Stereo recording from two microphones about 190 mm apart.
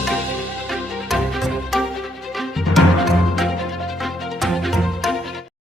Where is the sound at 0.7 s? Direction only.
Centre (ahead or behind).